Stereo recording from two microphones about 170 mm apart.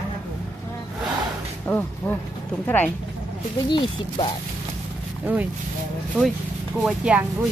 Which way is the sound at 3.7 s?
30° left (ahead or behind).